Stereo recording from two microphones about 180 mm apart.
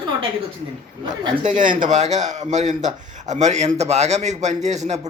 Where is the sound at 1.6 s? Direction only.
45° right (ahead or behind).